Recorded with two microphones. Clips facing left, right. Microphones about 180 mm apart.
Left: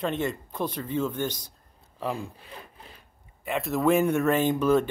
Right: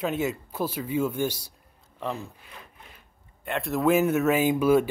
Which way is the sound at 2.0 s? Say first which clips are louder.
Left 1 dB; 10° left (ahead or behind).